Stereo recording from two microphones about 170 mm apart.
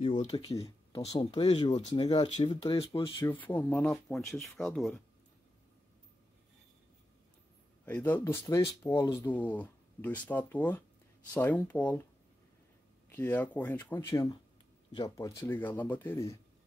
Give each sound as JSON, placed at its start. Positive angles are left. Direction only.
{"t": 0.0, "sound": "speech", "side_deg": 30}
{"t": 3.4, "sound": "speech", "side_deg": 10}
{"t": 7.8, "sound": "speech", "side_deg": 10}
{"t": 13.1, "sound": "speech", "side_deg": 10}